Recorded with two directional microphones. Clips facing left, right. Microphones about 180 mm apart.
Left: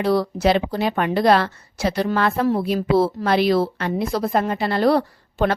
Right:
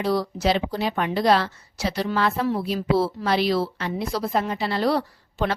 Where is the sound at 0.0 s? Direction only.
60° left (ahead or behind).